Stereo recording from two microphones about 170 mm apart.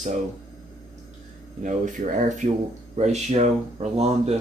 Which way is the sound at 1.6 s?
45° right (ahead or behind).